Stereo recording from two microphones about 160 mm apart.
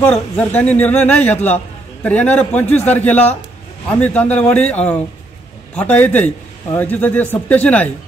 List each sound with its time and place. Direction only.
0.0 s a man's voice: 10° left (ahead or behind)